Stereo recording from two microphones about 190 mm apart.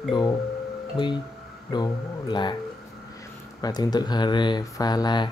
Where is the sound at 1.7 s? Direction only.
25° left (ahead or behind).